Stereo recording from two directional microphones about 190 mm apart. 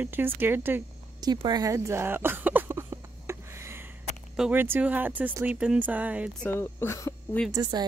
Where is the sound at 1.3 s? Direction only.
20° right (ahead or behind).